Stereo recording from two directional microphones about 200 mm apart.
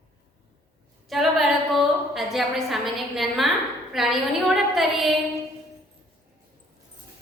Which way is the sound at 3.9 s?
Centre (ahead or behind).